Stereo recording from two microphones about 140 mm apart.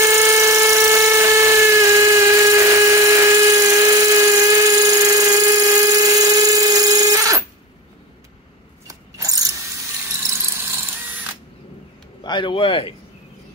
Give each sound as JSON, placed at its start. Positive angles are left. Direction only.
{"t": 0.0, "sound": "tools", "side_deg": -20}
{"t": 8.8, "sound": "ratchet", "side_deg": -25}
{"t": 12.2, "sound": "a sound", "side_deg": 35}